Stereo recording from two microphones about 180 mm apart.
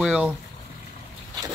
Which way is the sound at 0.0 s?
5° right (ahead or behind).